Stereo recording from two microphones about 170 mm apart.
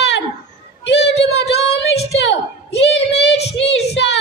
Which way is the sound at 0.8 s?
90° left.